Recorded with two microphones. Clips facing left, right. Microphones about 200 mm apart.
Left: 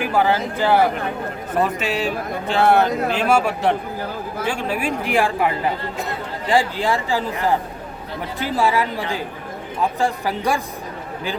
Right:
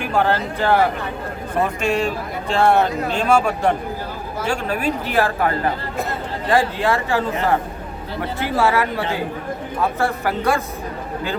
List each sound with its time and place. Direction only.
0.0 s a man's voice: 5° left (ahead or behind)
1.8 s a man's voice: 5° left (ahead or behind)
6.8 s speech: 15° left (ahead or behind)
8.5 s speech: 15° left (ahead or behind)